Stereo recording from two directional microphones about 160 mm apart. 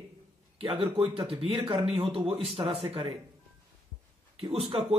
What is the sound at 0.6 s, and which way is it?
A man's voice, 35° right (ahead or behind).